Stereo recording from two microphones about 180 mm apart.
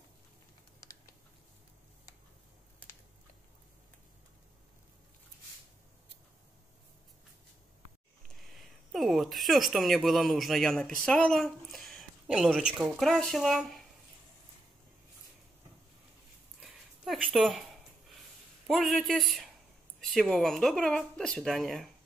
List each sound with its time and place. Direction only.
8.4 s speech: centre (ahead or behind)
16.6 s a sound: centre (ahead or behind)
18.7 s speech: centre (ahead or behind)